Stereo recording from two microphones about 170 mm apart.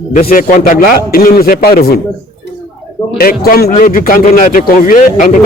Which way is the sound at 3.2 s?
60° left (ahead or behind).